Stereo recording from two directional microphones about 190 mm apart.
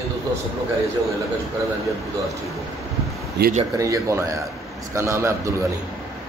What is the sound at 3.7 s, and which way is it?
A man's voice, 15° right (ahead or behind).